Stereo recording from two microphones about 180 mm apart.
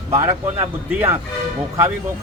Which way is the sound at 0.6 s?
10° right (ahead or behind).